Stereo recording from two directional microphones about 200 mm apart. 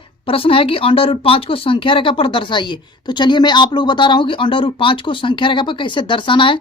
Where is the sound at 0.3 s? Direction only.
25° left (ahead or behind).